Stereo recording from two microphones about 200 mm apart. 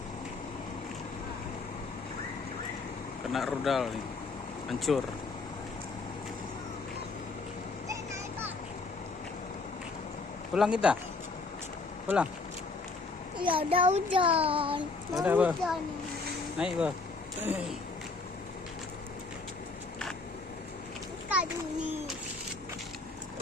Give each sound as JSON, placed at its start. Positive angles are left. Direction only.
{"t": 3.3, "sound": "speech", "side_deg": 0}
{"t": 4.9, "sound": "speech", "side_deg": 0}
{"t": 7.9, "sound": "a sound", "side_deg": -10}
{"t": 10.5, "sound": "speech", "side_deg": -5}
{"t": 12.0, "sound": "speech", "side_deg": -5}
{"t": 13.4, "sound": "child singing", "side_deg": -25}
{"t": 15.1, "sound": "speech", "side_deg": -5}
{"t": 21.2, "sound": "a sound", "side_deg": -10}